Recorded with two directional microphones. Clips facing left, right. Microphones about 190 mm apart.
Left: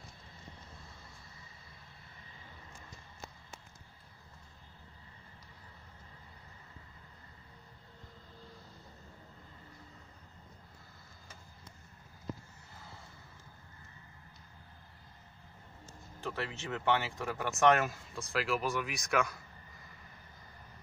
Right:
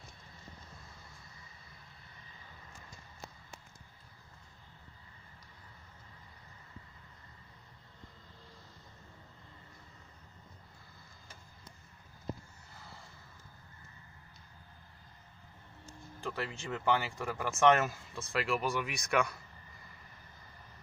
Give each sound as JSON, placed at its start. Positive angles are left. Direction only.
{"t": 16.2, "sound": "speech", "side_deg": 0}